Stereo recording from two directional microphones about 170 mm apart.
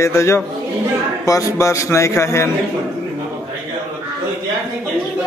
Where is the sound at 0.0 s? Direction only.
15° left (ahead or behind).